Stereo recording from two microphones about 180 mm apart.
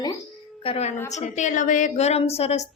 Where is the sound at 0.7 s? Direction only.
35° left (ahead or behind).